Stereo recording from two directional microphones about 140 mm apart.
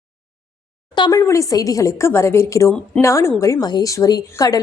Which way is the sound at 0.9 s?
35° left (ahead or behind).